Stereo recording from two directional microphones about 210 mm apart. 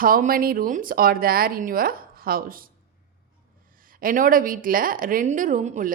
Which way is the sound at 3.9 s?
40° right (ahead or behind).